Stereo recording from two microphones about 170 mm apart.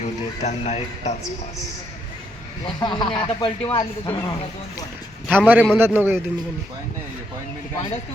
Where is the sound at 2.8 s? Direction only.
25° left (ahead or behind).